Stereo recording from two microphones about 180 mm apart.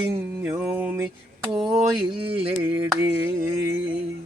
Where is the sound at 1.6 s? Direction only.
30° right (ahead or behind).